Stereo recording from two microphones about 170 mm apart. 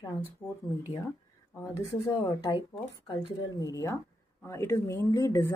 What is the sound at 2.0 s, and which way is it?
Speech, 20° left (ahead or behind).